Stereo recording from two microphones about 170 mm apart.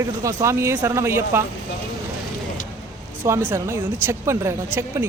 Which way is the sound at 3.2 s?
15° right (ahead or behind).